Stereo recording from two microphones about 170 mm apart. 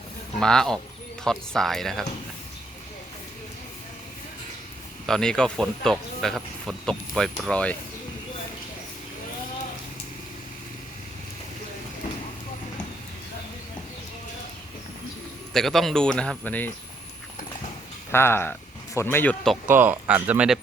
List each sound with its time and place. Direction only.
0.3 s speech: 5° left (ahead or behind)
5.0 s speech: 5° left (ahead or behind)
15.5 s speech: centre (ahead or behind)
18.1 s speech: 15° left (ahead or behind)
19.6 s speech: 10° right (ahead or behind)